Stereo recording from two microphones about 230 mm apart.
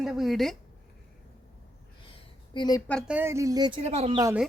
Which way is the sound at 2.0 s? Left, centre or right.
Left.